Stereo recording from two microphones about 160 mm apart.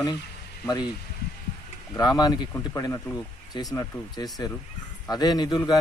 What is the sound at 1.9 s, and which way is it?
A man's voice, 25° left (ahead or behind).